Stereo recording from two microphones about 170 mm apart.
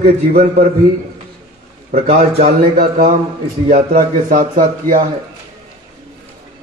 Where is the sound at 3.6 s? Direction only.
55° right (ahead or behind).